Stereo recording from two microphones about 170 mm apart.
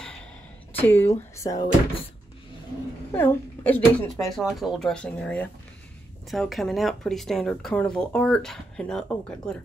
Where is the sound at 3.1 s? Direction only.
15° left (ahead or behind).